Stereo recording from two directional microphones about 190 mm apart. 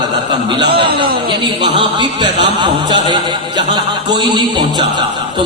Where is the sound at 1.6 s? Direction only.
25° right (ahead or behind).